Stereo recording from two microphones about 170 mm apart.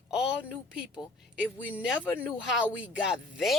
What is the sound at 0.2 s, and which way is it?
Speech, 5° right (ahead or behind).